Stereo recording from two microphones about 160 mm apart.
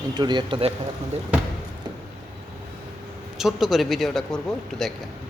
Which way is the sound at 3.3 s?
Centre (ahead or behind).